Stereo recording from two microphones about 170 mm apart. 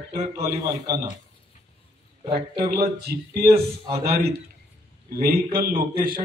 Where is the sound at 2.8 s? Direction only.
65° right (ahead or behind).